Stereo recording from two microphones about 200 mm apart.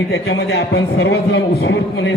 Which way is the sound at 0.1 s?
60° left (ahead or behind).